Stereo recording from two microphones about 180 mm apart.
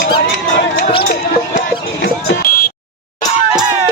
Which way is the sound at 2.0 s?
55° left (ahead or behind).